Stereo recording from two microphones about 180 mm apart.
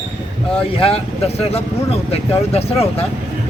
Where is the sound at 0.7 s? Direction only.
35° left (ahead or behind).